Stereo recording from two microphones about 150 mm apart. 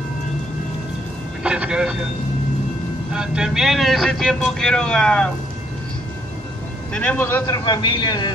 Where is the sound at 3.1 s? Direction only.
5° right (ahead or behind).